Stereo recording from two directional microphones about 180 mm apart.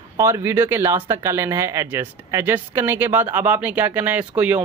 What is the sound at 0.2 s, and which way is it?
Speech, 15° right (ahead or behind).